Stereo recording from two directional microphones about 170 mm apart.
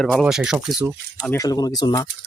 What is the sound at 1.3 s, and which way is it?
Speech, 20° left (ahead or behind).